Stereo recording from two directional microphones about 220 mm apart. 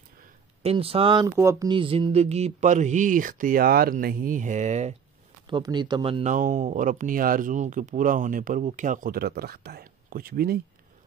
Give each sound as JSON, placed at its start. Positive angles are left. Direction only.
{"t": 0.6, "sound": "speech", "side_deg": -25}
{"t": 5.5, "sound": "speech", "side_deg": -20}